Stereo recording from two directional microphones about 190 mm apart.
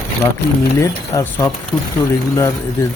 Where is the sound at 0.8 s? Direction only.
15° left (ahead or behind).